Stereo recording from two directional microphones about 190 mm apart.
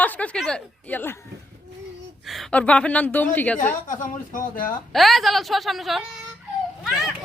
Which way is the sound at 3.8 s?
45° left (ahead or behind).